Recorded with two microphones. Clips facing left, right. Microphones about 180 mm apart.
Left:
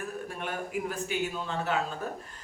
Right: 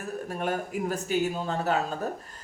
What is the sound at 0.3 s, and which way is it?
A man's voice, 40° right (ahead or behind).